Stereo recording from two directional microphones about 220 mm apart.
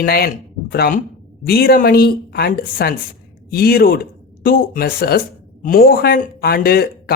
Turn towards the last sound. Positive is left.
turn(degrees=45)  # may be behind; listen again after turning